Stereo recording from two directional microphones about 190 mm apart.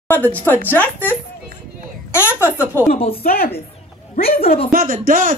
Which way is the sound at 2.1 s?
15° left (ahead or behind).